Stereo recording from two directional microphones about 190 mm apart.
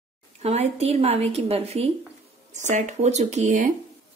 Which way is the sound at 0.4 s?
35° right (ahead or behind).